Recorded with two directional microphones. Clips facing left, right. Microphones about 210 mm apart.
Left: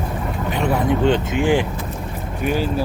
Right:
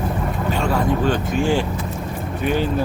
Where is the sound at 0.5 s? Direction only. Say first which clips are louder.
Left 2 dB; 20° left (ahead or behind).